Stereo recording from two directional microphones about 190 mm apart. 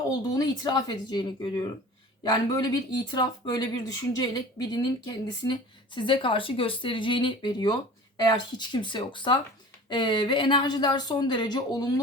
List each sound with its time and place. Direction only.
0.1 s speech: 20° left (ahead or behind)